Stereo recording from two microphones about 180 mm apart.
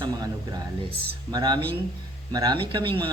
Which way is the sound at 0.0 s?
20° right (ahead or behind).